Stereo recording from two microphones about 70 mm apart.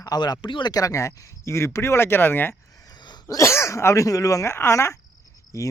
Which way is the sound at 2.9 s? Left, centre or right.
Left.